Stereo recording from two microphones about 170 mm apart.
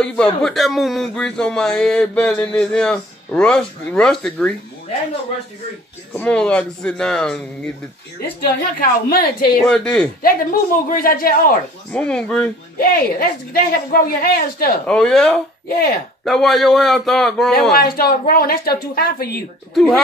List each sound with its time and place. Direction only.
0.0 s speech: 5° left (ahead or behind)
6.1 s speech: 5° left (ahead or behind)
8.7 s speech: 65° left (ahead or behind)
9.6 s speech: 5° left (ahead or behind)
10.2 s speech: 55° left (ahead or behind)
11.9 s speech: 5° left (ahead or behind)
12.7 s speech: 60° left (ahead or behind)
14.9 s speech: 5° left (ahead or behind)
17.7 s speech: 65° left (ahead or behind)
19.7 s speech: 5° left (ahead or behind)